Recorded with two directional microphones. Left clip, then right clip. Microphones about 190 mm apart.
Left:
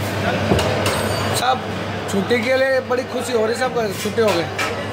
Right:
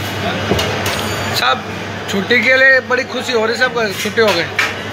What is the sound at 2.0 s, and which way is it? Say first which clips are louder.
A man's voice: right 6 dB; 5° left (ahead or behind).